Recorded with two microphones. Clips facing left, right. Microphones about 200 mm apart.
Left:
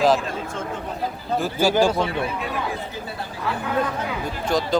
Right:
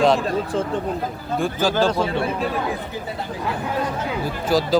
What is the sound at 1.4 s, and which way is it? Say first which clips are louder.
Speech: left 1 dB; 10° left (ahead or behind).